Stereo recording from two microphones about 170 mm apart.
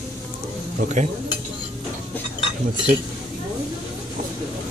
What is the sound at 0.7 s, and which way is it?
Speech, 45° right (ahead or behind).